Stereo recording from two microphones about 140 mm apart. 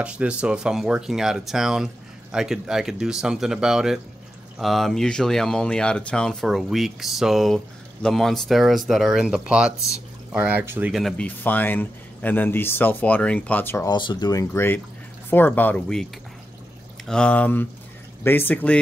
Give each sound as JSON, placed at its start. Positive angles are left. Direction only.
{"t": 0.0, "sound": "speech", "side_deg": -10}
{"t": 10.9, "sound": "speech", "side_deg": 0}
{"t": 11.2, "sound": "speech", "side_deg": 15}
{"t": 13.8, "sound": "speech", "side_deg": 30}
{"t": 14.5, "sound": "speech", "side_deg": 15}
{"t": 17.1, "sound": "speech", "side_deg": 10}